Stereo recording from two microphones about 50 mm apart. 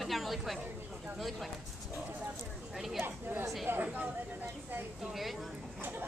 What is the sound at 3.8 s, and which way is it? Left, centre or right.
Speech, right.